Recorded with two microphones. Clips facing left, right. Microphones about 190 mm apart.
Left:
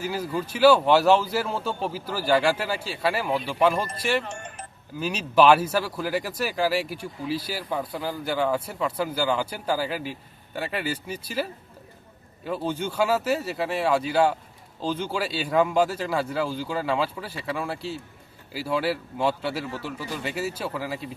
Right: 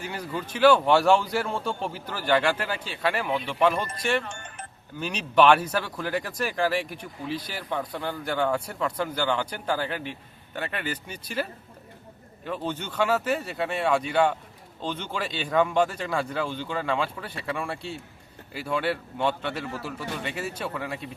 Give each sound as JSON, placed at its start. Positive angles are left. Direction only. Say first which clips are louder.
{"t": 0.0, "sound": "speech", "louder": "left 4 dB", "side_deg": 5}
{"t": 4.2, "sound": "speech", "louder": "left 3 dB", "side_deg": 30}
{"t": 4.9, "sound": "speech", "louder": "left 1 dB", "side_deg": 5}
{"t": 12.5, "sound": "speech", "louder": "left 3 dB", "side_deg": 10}